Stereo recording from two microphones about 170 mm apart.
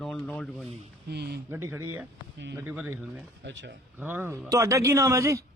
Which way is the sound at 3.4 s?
90° right.